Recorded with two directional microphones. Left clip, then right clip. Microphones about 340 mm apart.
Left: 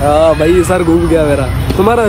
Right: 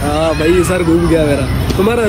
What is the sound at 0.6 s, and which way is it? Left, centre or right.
Speech, centre.